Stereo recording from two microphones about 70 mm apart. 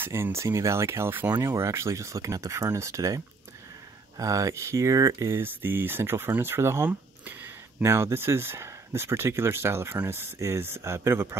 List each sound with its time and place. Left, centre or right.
0.0 s speech: right
4.2 s speech: right
6.9 s a sound: right
7.8 s speech: right